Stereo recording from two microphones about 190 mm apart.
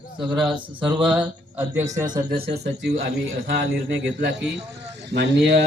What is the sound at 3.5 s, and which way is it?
Speech, 75° right (ahead or behind).